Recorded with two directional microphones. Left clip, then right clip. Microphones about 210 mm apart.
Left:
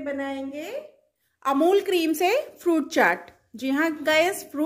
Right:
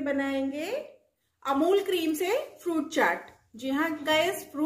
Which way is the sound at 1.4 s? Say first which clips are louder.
Left 4 dB; 45° left (ahead or behind).